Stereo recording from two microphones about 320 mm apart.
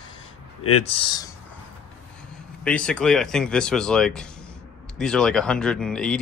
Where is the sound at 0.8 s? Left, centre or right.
Centre.